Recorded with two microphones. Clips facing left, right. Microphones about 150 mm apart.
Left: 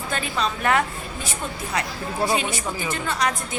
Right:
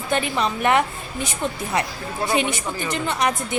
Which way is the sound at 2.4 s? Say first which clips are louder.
Right 3 dB; 20° right (ahead or behind).